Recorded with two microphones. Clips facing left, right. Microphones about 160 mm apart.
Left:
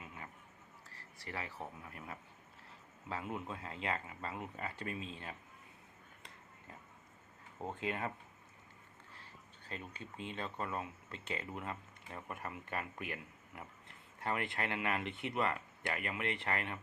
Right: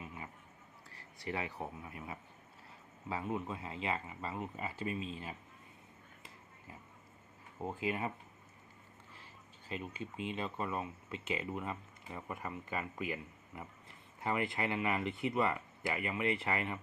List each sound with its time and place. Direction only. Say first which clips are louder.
0.9 s a sound: right 7 dB; 15° right (ahead or behind)
1.8 s speech: right 3 dB; 5° right (ahead or behind)
7.7 s speech: right 2 dB; 5° right (ahead or behind)
9.6 s speech: right 5 dB; 5° right (ahead or behind)